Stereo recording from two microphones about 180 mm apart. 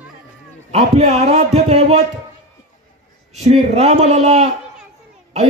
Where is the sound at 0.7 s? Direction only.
35° right (ahead or behind).